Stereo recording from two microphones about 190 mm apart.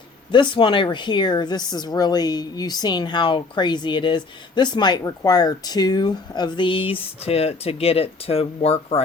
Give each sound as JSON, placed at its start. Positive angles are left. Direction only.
{"t": 0.3, "sound": "a woman's voice", "side_deg": 25}